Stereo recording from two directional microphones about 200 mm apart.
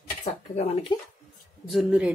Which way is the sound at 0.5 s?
30° left (ahead or behind).